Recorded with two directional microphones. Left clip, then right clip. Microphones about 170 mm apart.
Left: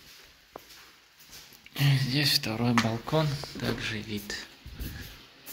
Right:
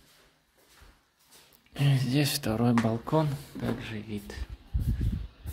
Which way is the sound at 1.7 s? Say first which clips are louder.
Left 2 dB; 35° right (ahead or behind).